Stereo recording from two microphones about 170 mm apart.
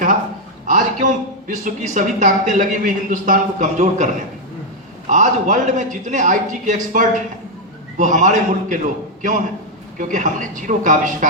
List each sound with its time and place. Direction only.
0.6 s speech: 45° right (ahead or behind)